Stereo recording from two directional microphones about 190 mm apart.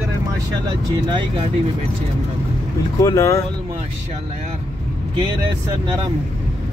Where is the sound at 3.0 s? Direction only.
15° left (ahead or behind).